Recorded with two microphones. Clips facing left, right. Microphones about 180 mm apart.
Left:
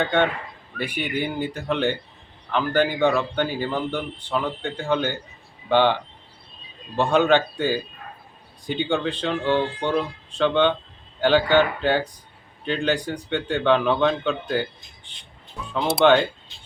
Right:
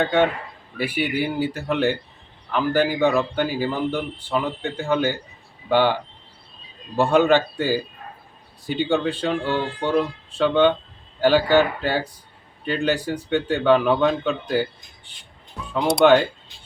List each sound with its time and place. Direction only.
0.0 s a man's voice: 5° right (ahead or behind)